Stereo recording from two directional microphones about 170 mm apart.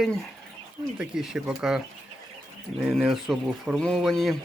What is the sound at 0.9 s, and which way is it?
Speech, 5° right (ahead or behind).